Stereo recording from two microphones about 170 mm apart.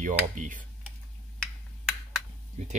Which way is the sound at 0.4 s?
50° right (ahead or behind).